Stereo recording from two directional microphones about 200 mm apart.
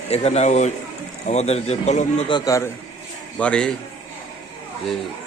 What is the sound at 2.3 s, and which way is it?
Speech, 15° left (ahead or behind).